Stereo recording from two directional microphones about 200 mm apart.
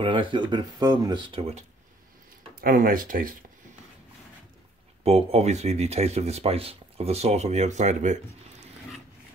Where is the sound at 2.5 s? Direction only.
45° right (ahead or behind).